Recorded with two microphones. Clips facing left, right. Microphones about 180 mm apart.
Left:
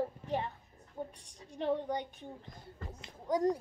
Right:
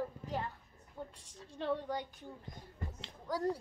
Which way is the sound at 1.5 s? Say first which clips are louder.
Left 3 dB; 15° left (ahead or behind).